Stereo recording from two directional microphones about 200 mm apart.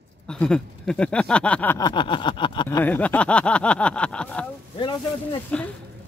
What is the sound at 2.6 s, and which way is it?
Speech, 10° left (ahead or behind).